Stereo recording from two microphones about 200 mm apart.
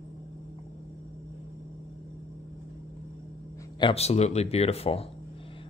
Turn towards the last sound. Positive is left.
turn(degrees=30)  # may be behind; listen again after turning